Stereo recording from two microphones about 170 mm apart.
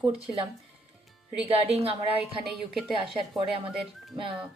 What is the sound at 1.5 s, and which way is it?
Speech, 35° right (ahead or behind).